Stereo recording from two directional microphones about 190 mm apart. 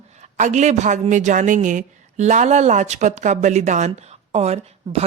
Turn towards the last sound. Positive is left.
turn(degrees=-35)  # may be behind; listen again after turning